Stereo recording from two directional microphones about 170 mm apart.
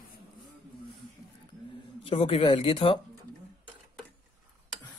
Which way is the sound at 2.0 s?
35° left (ahead or behind).